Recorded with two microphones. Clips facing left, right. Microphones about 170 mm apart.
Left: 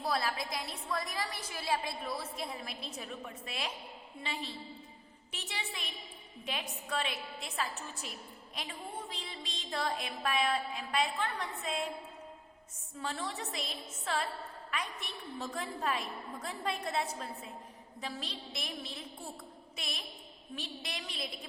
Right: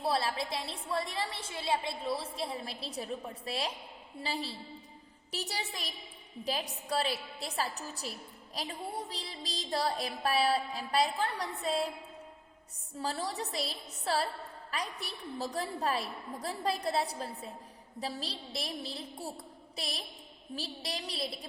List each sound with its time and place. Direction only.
0.0 s a woman's voice: 30° right (ahead or behind)
4.2 s music: 35° right (ahead or behind)
12.9 s music: 35° right (ahead or behind)